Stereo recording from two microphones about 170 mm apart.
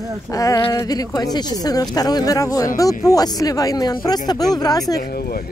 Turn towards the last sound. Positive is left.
turn(degrees=65)  # may be behind; listen again after turning